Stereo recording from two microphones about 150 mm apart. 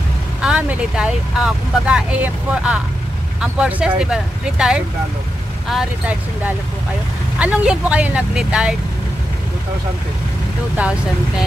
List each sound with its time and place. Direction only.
0.4 s speech: 5° right (ahead or behind)
10.8 s speech: 5° right (ahead or behind)